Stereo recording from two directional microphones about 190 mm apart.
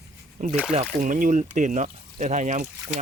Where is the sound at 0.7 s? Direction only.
40° right (ahead or behind).